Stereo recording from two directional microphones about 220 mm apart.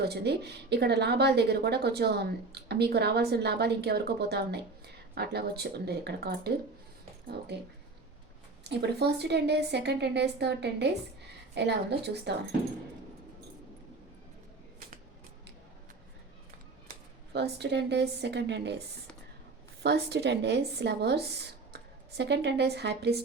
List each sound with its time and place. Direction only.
0.0 s a woman's voice: 50° right (ahead or behind)
8.6 s a woman's voice: 50° right (ahead or behind)
16.9 s speech: 50° right (ahead or behind)
19.8 s a woman's voice: 50° right (ahead or behind)